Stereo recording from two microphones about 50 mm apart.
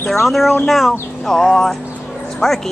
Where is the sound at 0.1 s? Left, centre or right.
Centre.